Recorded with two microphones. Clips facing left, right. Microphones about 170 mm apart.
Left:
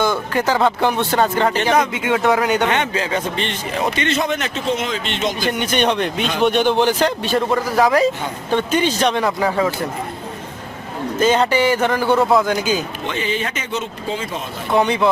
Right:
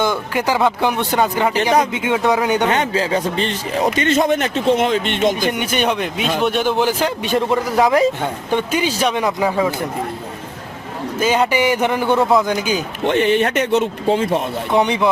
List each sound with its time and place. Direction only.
0.0 s a man's voice: 15° right (ahead or behind)
2.6 s speech: 30° right (ahead or behind); by 5.5 s 55° right (ahead or behind)
5.5 s a man's voice: 10° right (ahead or behind)
7.3 s a man's voice: 20° right (ahead or behind)
11.2 s a man's voice: 10° right (ahead or behind)
13.1 s speech: 60° right (ahead or behind)
14.7 s a man's voice: 20° right (ahead or behind)